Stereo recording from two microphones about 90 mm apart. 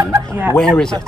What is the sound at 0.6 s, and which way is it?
Speech, 5° left (ahead or behind).